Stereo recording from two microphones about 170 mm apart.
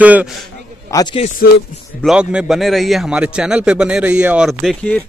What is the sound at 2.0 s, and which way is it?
A man's voice, 5° right (ahead or behind).